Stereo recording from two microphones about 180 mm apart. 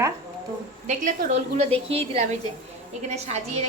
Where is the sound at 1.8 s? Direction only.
35° right (ahead or behind).